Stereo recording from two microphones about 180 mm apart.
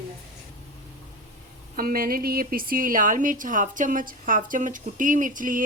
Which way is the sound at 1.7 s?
55° right (ahead or behind).